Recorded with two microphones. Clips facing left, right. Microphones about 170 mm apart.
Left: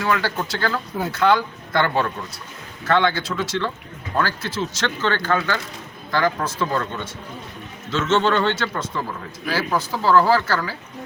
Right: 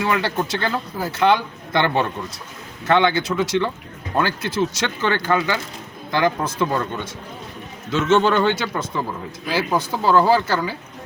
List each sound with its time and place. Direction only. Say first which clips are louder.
0.0 s speech: right 1 dB; 20° right (ahead or behind)
7.9 s speech: right 2 dB; 10° right (ahead or behind)